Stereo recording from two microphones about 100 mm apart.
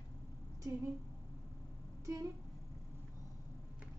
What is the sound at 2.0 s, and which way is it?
Speech, 35° right (ahead or behind).